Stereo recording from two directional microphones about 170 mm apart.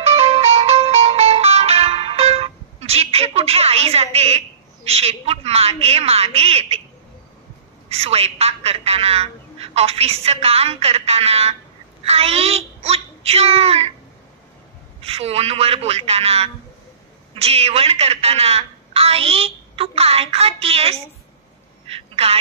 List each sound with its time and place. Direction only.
0.0 s music: 40° right (ahead or behind)
4.8 s a woman's voice: 35° right (ahead or behind)
7.9 s a woman's voice: 35° right (ahead or behind)
15.0 s a woman's voice: 35° right (ahead or behind)
21.8 s a sound: 35° right (ahead or behind)